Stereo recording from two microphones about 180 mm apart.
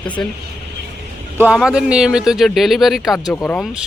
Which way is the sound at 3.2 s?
10° left (ahead or behind).